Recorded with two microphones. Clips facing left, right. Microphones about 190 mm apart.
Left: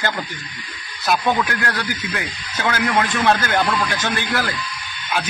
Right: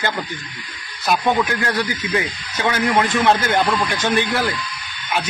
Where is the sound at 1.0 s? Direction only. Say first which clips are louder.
Right 1 dB; 20° right (ahead or behind).